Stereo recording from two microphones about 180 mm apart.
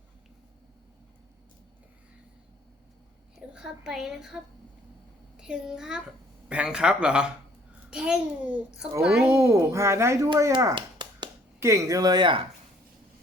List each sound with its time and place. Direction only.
3.5 s a child's voice: 5° right (ahead or behind)
5.4 s a child's voice: 5° right (ahead or behind)
10.5 s a sound: 20° right (ahead or behind)
11.6 s speech: 15° right (ahead or behind)